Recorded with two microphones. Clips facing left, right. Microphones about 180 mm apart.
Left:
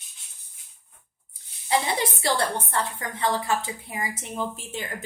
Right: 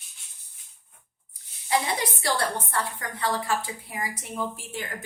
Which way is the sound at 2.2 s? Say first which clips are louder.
Left 1 dB; 25° left (ahead or behind).